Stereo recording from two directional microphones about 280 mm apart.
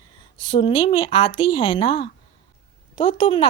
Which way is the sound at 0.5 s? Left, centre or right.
Centre.